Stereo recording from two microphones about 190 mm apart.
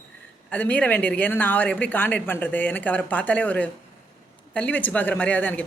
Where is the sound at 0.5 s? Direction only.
10° left (ahead or behind).